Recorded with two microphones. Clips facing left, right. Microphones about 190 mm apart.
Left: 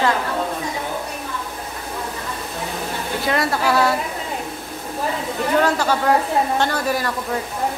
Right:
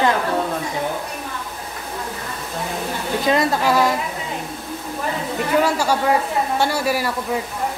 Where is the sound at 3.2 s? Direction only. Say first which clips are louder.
Right 2 dB; 20° right (ahead or behind).